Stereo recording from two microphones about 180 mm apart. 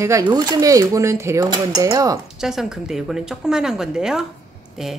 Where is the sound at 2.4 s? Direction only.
Centre (ahead or behind).